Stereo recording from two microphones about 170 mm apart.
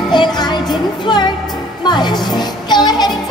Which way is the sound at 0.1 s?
25° left (ahead or behind).